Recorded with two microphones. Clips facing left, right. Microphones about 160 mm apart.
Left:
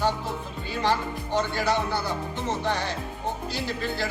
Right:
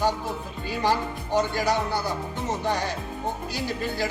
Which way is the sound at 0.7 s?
10° right (ahead or behind).